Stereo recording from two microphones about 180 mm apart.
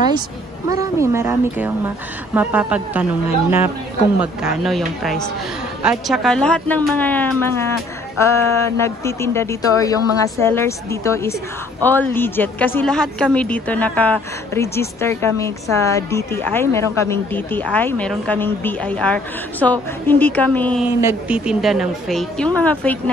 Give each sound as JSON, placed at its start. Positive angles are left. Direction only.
{"t": 0.7, "sound": "a woman's voice", "side_deg": -15}
{"t": 21.0, "sound": "a woman's voice", "side_deg": -10}